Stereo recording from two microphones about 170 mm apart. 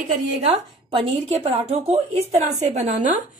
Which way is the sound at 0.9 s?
35° right (ahead or behind).